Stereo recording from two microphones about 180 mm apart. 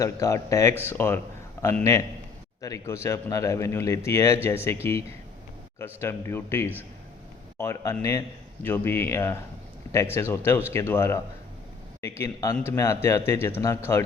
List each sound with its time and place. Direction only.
0.0 s a man's voice: 20° left (ahead or behind)